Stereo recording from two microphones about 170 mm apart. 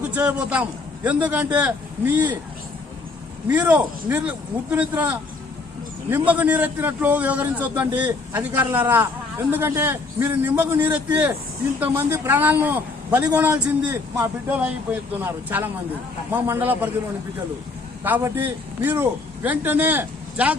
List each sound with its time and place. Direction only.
0.1 s a man's voice: 5° right (ahead or behind)
3.5 s a man's voice: 10° right (ahead or behind)
18.0 s a man's voice: 10° right (ahead or behind)